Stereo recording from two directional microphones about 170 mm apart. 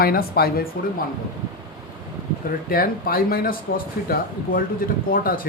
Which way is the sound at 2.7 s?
60° left (ahead or behind).